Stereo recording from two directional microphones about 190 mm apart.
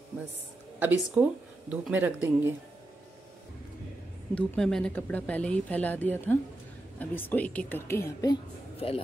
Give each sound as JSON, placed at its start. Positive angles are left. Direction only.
{"t": 0.7, "sound": "speech", "side_deg": -10}
{"t": 4.4, "sound": "speech", "side_deg": 5}
{"t": 8.7, "sound": "speech", "side_deg": 30}